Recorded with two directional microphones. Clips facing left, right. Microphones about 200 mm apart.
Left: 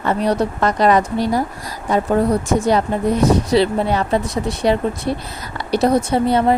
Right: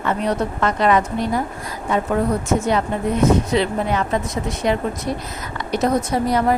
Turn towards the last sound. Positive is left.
turn(degrees=25)  # may be behind; listen again after turning